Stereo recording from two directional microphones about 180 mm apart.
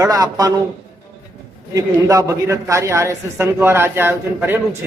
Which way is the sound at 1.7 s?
20° right (ahead or behind).